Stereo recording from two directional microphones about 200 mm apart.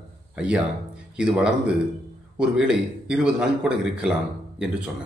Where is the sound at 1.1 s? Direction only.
5° right (ahead or behind).